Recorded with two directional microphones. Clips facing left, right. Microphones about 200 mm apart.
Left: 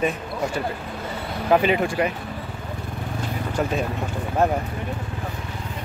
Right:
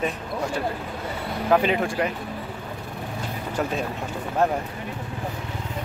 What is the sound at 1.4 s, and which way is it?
Speech, 5° left (ahead or behind).